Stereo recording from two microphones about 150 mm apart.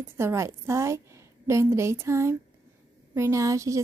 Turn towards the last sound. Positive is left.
turn(degrees=-20)  # may be behind; listen again after turning